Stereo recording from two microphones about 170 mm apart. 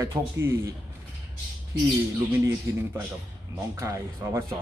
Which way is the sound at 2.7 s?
20° right (ahead or behind).